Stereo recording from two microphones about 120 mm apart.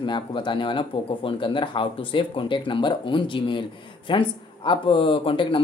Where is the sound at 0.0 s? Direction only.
45° left (ahead or behind).